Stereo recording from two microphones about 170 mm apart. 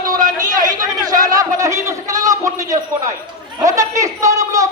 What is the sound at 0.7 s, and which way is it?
Chatter, 20° right (ahead or behind).